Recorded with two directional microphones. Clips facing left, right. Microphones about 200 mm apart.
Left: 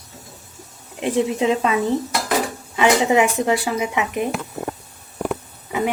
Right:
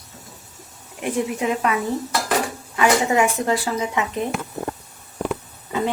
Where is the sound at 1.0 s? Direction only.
25° left (ahead or behind).